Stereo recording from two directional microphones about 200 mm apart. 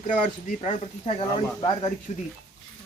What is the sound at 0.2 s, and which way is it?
Speech, 35° left (ahead or behind).